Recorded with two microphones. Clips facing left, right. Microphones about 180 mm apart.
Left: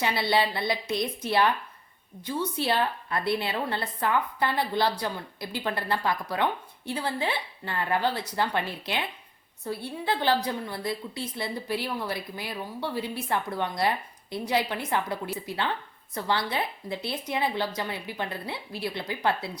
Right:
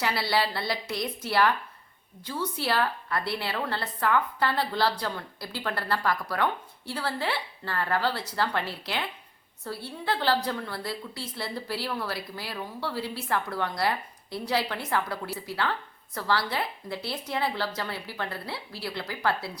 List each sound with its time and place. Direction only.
0.0 s a woman's voice: 20° left (ahead or behind)